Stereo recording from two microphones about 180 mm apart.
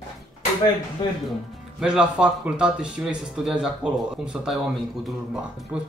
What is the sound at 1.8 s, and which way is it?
Speech, 5° right (ahead or behind).